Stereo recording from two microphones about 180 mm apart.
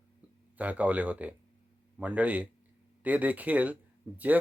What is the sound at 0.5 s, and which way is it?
Speech, 10° right (ahead or behind).